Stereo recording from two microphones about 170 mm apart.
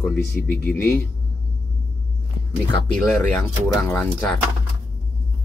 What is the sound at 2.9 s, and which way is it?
Speech, 5° left (ahead or behind).